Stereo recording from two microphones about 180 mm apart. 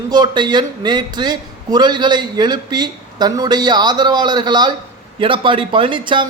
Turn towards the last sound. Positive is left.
turn(degrees=-25)  # may be behind; listen again after turning